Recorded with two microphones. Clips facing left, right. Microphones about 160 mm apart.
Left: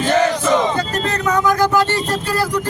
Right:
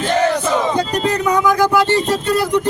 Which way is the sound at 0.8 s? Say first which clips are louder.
Right 3 dB; 15° right (ahead or behind).